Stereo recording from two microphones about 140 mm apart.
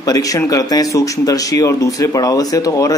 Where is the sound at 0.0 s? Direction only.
25° left (ahead or behind).